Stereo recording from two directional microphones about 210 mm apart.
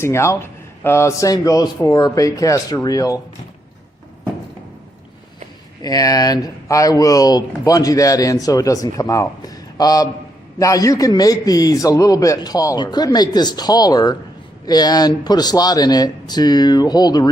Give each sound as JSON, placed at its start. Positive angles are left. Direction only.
{"t": 0.0, "sound": "speech", "side_deg": 15}
{"t": 5.8, "sound": "speech", "side_deg": 20}